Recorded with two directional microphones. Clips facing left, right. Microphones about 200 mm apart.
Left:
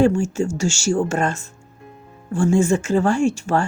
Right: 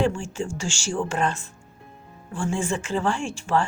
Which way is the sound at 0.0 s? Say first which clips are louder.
Left 8 dB; 45° left (ahead or behind).